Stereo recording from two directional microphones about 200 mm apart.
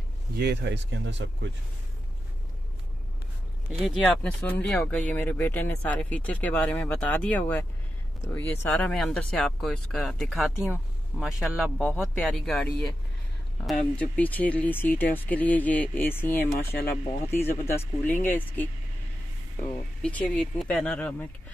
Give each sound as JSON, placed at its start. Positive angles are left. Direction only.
{"t": 0.4, "sound": "speech", "side_deg": -55}
{"t": 3.8, "sound": "speech", "side_deg": 5}
{"t": 8.6, "sound": "speech", "side_deg": 5}
{"t": 14.1, "sound": "speech", "side_deg": 10}
{"t": 16.5, "sound": "speech", "side_deg": 45}
{"t": 17.3, "sound": "speech", "side_deg": 10}
{"t": 20.0, "sound": "speech", "side_deg": 5}